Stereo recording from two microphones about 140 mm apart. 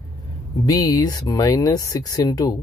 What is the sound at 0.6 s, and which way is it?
Speech, 25° left (ahead or behind).